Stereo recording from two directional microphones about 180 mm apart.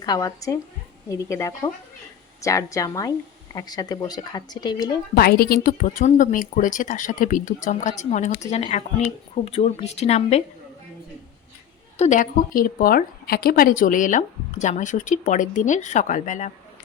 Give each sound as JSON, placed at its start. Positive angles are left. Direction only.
{"t": 0.0, "sound": "a woman's voice", "side_deg": 20}
{"t": 5.1, "sound": "a woman's voice", "side_deg": 60}
{"t": 11.9, "sound": "a woman's voice", "side_deg": 45}